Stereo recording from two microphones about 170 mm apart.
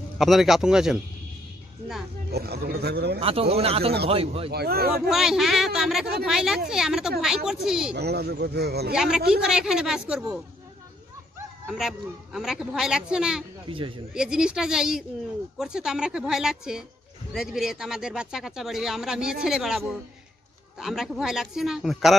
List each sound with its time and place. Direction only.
0.2 s speech: centre (ahead or behind)
2.3 s speech: 70° right (ahead or behind)
3.2 s speech: 35° right (ahead or behind)
4.5 s speech: 65° right (ahead or behind)
4.9 s speech: centre (ahead or behind)
7.9 s speech: 75° right (ahead or behind)
8.9 s speech: 5° right (ahead or behind)
11.6 s speech: centre (ahead or behind)
13.7 s speech: 30° right (ahead or behind)
14.1 s speech: 5° right (ahead or behind)